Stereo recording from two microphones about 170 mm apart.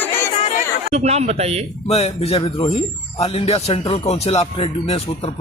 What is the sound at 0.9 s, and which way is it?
Speech, 40° right (ahead or behind).